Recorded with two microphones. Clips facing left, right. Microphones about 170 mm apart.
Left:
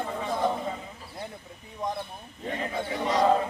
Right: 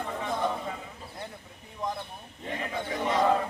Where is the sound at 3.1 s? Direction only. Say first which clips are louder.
Left 2 dB; 15° left (ahead or behind).